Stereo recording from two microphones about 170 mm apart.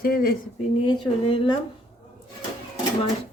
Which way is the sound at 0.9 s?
30° left (ahead or behind).